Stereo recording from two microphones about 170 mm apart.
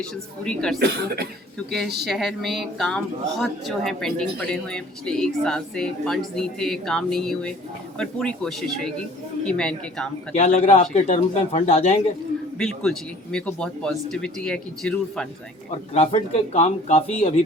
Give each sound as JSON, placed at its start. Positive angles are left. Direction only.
{"t": 0.0, "sound": "speech", "side_deg": 5}
{"t": 0.8, "sound": "speech", "side_deg": -70}
{"t": 1.5, "sound": "speech", "side_deg": 0}
{"t": 10.3, "sound": "speech", "side_deg": 40}
{"t": 12.5, "sound": "speech", "side_deg": 0}
{"t": 15.9, "sound": "speech", "side_deg": 40}